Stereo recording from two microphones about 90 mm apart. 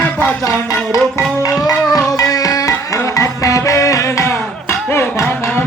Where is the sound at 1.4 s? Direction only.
40° left (ahead or behind).